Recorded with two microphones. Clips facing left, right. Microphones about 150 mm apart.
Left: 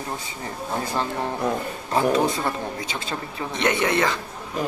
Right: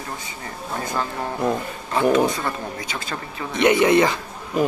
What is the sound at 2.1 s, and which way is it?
Speech, 25° left (ahead or behind).